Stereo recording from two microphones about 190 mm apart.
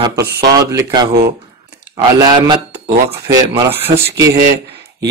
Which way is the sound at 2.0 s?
20° right (ahead or behind).